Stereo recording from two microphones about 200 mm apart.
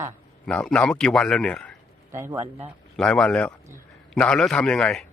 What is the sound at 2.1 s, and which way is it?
Speech, 15° right (ahead or behind).